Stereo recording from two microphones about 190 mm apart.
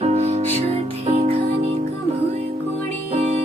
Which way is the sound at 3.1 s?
35° right (ahead or behind).